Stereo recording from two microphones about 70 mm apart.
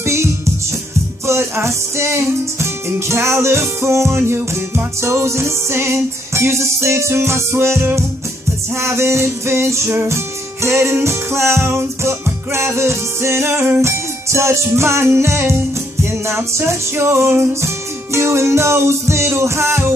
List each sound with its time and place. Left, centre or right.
0.0 s music: right